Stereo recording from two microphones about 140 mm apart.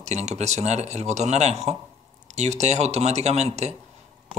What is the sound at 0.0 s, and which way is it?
Speech, 55° right (ahead or behind).